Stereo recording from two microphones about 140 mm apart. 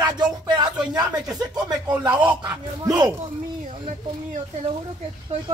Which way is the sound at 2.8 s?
25° right (ahead or behind).